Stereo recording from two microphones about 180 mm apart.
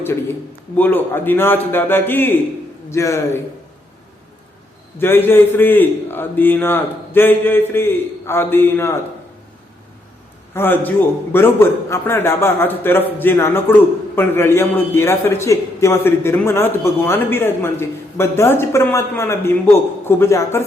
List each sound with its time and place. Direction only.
0.8 s a man's voice: 10° left (ahead or behind)
4.9 s a man's voice: 10° left (ahead or behind)
10.5 s a man's voice: 10° left (ahead or behind)